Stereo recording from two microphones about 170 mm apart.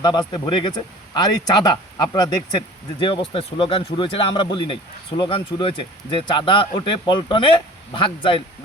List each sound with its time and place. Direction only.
0.0 s speech: 25° left (ahead or behind)